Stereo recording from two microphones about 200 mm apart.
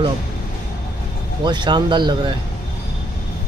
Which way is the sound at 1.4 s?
20° right (ahead or behind).